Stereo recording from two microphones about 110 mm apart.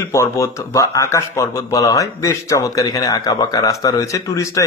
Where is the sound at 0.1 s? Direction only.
25° left (ahead or behind).